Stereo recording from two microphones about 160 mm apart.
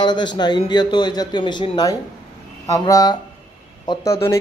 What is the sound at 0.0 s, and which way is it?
Speech, 30° left (ahead or behind).